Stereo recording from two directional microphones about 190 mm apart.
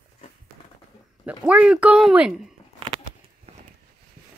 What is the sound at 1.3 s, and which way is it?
Speech, 5° right (ahead or behind).